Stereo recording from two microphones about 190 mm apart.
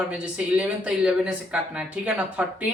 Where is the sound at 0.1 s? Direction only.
5° right (ahead or behind).